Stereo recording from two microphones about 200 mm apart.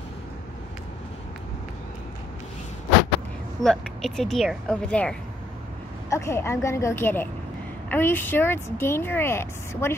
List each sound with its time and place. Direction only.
3.6 s speech: centre (ahead or behind)